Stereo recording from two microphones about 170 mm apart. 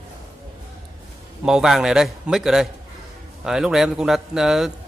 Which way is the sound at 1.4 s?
5° right (ahead or behind).